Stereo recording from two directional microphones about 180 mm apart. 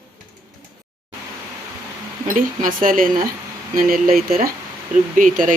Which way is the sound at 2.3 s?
45° right (ahead or behind).